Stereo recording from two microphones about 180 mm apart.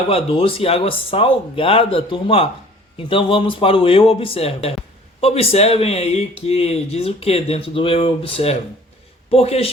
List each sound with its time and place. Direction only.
0.1 s speech: 30° left (ahead or behind)